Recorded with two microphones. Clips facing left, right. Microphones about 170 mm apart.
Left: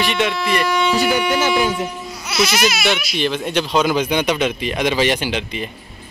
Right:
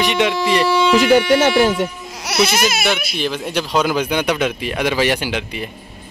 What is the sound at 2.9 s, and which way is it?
Speech, 5° right (ahead or behind).